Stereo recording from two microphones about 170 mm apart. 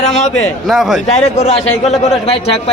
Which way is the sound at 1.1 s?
40° left (ahead or behind).